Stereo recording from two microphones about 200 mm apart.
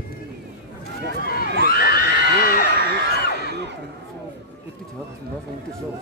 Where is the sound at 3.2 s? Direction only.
50° left (ahead or behind).